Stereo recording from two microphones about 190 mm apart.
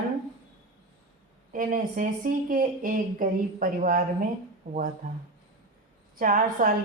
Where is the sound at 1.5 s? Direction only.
45° right (ahead or behind).